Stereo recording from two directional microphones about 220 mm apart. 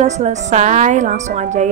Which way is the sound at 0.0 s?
30° right (ahead or behind).